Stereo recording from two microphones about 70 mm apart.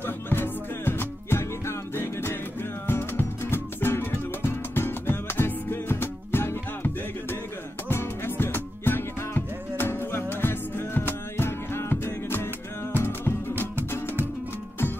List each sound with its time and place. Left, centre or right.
0.0 s music: left